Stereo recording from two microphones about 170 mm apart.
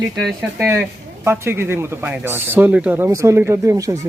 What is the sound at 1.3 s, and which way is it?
Speech, 15° right (ahead or behind).